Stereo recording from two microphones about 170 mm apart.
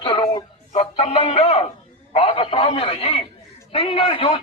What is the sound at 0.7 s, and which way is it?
Music, 40° left (ahead or behind).